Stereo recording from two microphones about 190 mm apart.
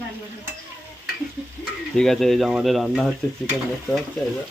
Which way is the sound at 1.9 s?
Centre (ahead or behind).